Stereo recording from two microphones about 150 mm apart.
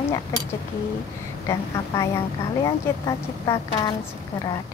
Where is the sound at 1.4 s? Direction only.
20° left (ahead or behind).